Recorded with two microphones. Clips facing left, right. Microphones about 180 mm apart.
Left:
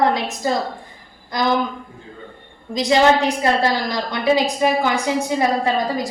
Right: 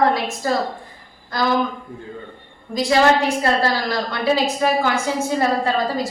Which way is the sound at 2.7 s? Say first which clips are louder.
Left 1 dB; 20° left (ahead or behind).